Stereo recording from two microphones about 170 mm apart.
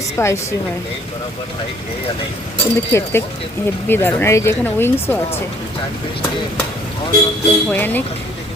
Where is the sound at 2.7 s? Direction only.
15° left (ahead or behind).